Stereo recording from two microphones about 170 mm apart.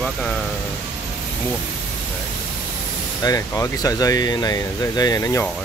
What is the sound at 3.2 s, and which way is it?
Speech, 20° left (ahead or behind).